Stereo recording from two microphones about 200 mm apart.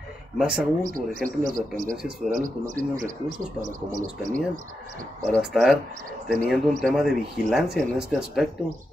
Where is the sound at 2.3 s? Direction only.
40° right (ahead or behind).